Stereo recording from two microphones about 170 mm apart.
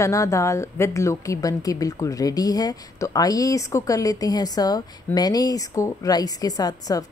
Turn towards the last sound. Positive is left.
turn(degrees=20)  # may be behind; listen again after turning